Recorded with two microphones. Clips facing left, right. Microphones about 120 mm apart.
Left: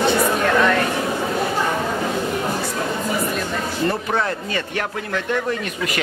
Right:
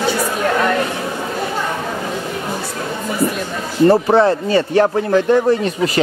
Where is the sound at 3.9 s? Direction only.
30° right (ahead or behind).